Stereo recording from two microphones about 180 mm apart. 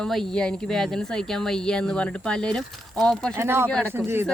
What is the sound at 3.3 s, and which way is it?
Speech, 15° right (ahead or behind).